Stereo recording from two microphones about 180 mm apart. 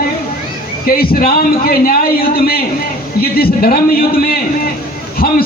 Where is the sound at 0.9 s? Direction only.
55° left (ahead or behind).